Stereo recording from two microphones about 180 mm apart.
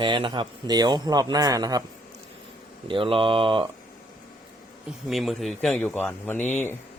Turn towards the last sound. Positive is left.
turn(degrees=10)  # may be behind; listen again after turning